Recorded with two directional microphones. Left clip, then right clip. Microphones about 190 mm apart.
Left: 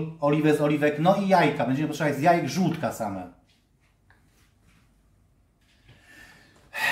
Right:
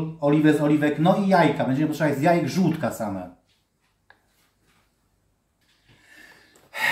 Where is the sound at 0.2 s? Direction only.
5° left (ahead or behind).